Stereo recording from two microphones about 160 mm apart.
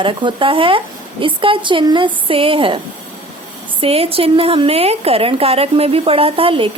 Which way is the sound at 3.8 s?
35° right (ahead or behind).